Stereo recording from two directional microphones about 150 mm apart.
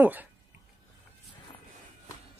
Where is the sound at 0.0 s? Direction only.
10° right (ahead or behind).